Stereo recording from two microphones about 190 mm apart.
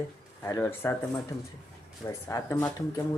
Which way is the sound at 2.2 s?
10° left (ahead or behind).